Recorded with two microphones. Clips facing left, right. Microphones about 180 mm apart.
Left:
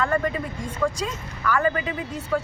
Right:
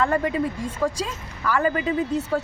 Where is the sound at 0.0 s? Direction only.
25° right (ahead or behind).